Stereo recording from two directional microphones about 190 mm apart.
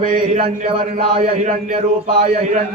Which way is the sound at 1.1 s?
35° right (ahead or behind).